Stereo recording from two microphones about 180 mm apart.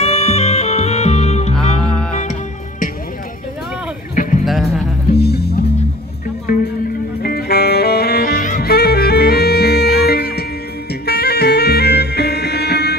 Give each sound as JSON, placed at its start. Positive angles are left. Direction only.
{"t": 0.0, "sound": "music", "side_deg": 35}
{"t": 1.5, "sound": "music", "side_deg": 5}
{"t": 4.1, "sound": "music", "side_deg": 45}
{"t": 4.5, "sound": "music", "side_deg": 0}
{"t": 5.2, "sound": "music", "side_deg": 60}
{"t": 7.2, "sound": "saxophone", "side_deg": 60}
{"t": 10.9, "sound": "music", "side_deg": 60}